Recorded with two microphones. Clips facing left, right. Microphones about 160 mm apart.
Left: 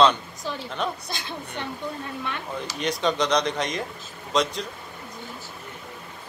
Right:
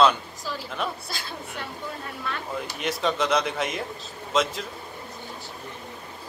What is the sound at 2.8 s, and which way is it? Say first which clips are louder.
A man's voice: left 2 dB; centre (ahead or behind).